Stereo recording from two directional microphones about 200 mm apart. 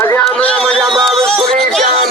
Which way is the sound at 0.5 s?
5° left (ahead or behind).